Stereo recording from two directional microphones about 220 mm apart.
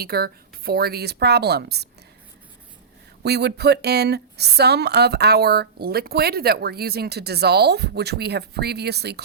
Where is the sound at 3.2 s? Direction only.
50° right (ahead or behind).